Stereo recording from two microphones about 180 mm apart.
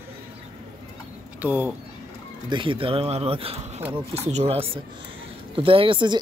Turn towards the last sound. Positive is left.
turn(degrees=-25)  # may be behind; listen again after turning